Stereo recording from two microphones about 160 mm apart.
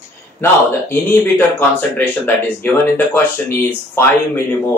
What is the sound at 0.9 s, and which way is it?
Speech, 15° left (ahead or behind).